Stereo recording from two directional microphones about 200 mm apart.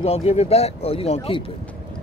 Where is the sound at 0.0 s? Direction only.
30° left (ahead or behind).